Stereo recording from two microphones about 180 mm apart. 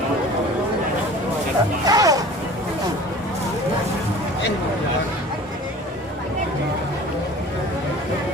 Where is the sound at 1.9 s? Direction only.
20° right (ahead or behind).